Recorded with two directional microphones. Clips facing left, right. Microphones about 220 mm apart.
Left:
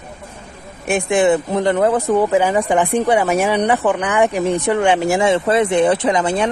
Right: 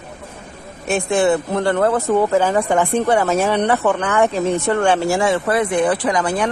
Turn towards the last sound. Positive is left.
turn(degrees=25)  # may be behind; listen again after turning